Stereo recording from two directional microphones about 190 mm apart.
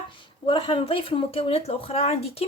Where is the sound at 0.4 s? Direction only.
30° left (ahead or behind).